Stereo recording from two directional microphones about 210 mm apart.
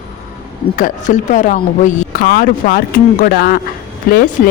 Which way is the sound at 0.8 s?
40° left (ahead or behind).